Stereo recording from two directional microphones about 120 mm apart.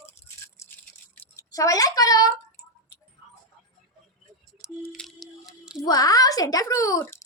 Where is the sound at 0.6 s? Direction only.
25° left (ahead or behind).